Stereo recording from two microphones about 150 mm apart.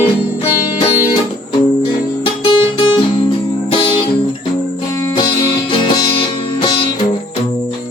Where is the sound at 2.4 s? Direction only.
35° left (ahead or behind).